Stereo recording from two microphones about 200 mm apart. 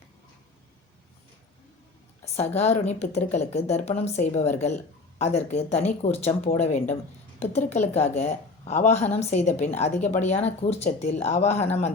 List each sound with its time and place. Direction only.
2.6 s a woman's voice: 35° left (ahead or behind)